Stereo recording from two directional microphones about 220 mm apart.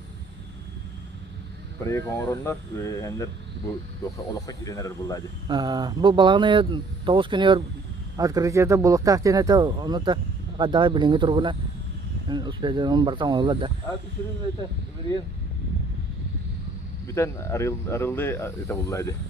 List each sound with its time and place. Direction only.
1.9 s speech: 10° left (ahead or behind)
5.5 s speech: 20° right (ahead or behind)
17.1 s speech: 10° left (ahead or behind)